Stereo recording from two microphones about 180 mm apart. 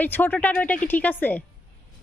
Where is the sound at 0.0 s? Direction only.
10° left (ahead or behind).